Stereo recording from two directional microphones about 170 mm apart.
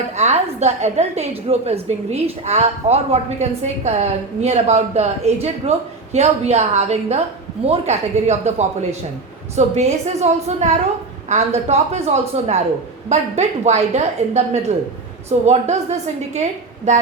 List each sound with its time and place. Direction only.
0.2 s a woman's voice: 40° right (ahead or behind)